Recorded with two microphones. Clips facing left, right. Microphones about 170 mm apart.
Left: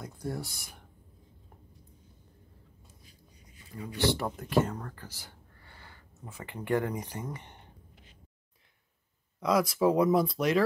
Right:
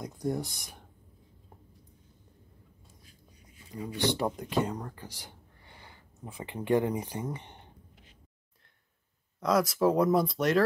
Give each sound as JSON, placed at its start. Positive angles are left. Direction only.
{"t": 0.0, "sound": "speech", "side_deg": -20}
{"t": 3.8, "sound": "speech", "side_deg": -15}
{"t": 9.4, "sound": "speech", "side_deg": 0}